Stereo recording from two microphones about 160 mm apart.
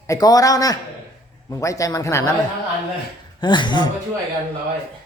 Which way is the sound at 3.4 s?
30° left (ahead or behind).